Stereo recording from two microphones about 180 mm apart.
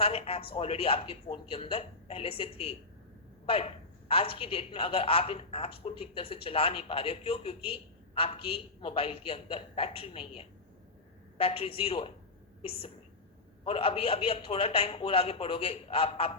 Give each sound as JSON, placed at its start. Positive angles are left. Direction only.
{"t": 0.0, "sound": "a woman's voice", "side_deg": 35}
{"t": 13.7, "sound": "a woman's voice", "side_deg": 30}